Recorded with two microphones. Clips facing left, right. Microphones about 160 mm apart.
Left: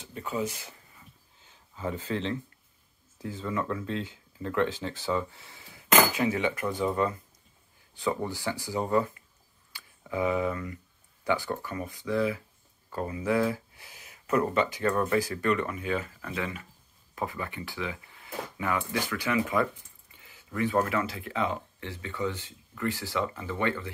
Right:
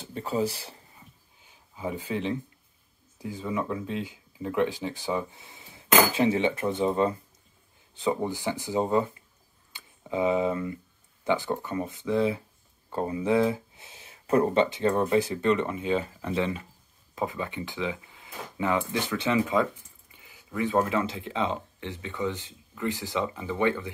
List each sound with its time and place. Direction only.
0.0 s speech: 30° right (ahead or behind)
1.4 s a sound: 10° right (ahead or behind)
3.2 s speech: 15° right (ahead or behind)